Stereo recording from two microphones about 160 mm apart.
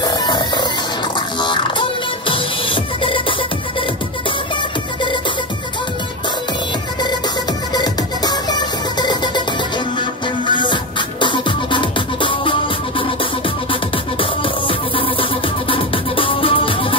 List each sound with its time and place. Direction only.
0.0 s music: 25° left (ahead or behind)
7.7 s music: 25° left (ahead or behind)